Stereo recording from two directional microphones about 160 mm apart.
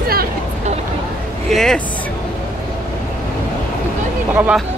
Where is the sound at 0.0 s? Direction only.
70° right (ahead or behind).